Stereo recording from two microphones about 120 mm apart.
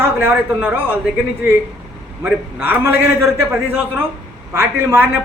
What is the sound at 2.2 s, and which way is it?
A man's voice, 15° right (ahead or behind).